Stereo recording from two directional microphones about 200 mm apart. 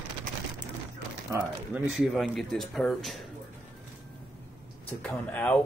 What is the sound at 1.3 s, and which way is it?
Speech, 10° right (ahead or behind).